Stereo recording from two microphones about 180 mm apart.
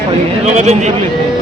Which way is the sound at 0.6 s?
40° right (ahead or behind).